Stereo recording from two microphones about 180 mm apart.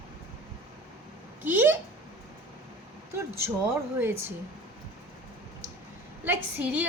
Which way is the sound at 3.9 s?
10° right (ahead or behind).